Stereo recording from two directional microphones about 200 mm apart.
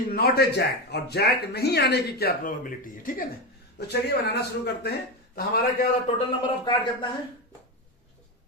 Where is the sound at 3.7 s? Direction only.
55° left (ahead or behind).